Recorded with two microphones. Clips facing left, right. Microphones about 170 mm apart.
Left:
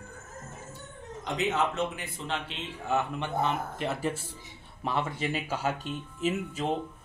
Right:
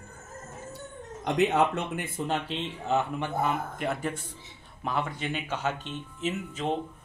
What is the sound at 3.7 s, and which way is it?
Speech, centre (ahead or behind).